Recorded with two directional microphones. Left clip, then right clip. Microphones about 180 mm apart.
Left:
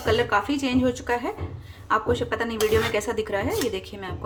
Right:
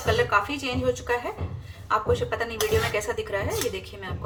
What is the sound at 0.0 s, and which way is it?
Speech, 40° left (ahead or behind).